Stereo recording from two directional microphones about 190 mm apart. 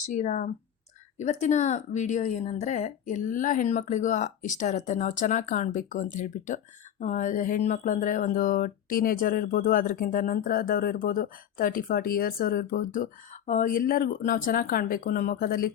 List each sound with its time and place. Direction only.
0.0 s speech: 40° left (ahead or behind)